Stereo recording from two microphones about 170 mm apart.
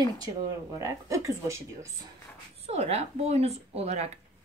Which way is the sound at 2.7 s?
40° right (ahead or behind).